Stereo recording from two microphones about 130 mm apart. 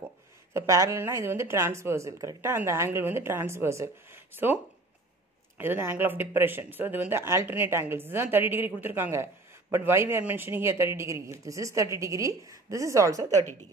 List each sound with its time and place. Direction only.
0.5 s speech: 20° right (ahead or behind)
5.6 s speech: 15° right (ahead or behind)